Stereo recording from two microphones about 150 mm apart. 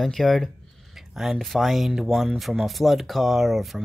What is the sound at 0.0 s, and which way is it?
Speech, centre (ahead or behind).